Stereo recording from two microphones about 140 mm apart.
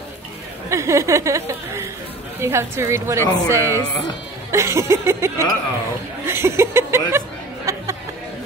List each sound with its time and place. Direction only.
0.7 s a woman's voice: 20° right (ahead or behind)
6.2 s chuckle: 20° right (ahead or behind)